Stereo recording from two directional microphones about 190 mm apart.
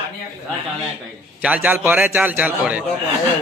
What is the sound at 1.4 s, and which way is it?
A man's voice, 10° right (ahead or behind).